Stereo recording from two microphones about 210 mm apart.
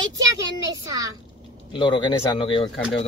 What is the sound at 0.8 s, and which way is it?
Speech, 15° right (ahead or behind).